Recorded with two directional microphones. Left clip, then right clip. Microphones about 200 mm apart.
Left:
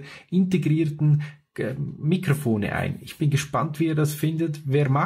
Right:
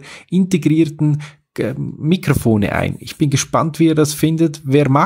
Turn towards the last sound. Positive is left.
turn(degrees=-45)  # may be behind; listen again after turning